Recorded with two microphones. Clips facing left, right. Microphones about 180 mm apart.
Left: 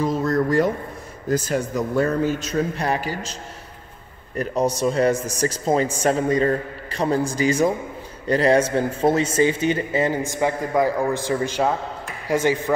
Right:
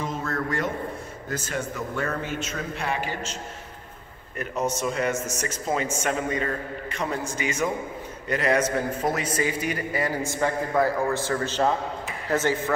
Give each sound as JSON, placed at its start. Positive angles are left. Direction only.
{"t": 0.0, "sound": "a sound", "side_deg": 35}
{"t": 1.3, "sound": "speech", "side_deg": 40}
{"t": 4.4, "sound": "a man's voice", "side_deg": 35}